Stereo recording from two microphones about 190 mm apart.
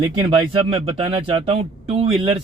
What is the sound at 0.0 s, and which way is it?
Speech, 20° right (ahead or behind).